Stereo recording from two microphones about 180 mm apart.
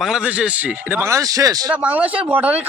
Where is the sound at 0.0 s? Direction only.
5° right (ahead or behind); by 1.7 s 20° right (ahead or behind).